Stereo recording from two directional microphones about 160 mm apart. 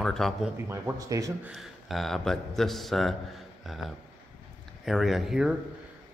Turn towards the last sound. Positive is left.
turn(degrees=-5)  # may be behind; listen again after turning